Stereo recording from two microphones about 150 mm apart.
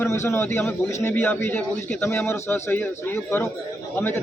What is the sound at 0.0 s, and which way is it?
A man's voice, 15° left (ahead or behind).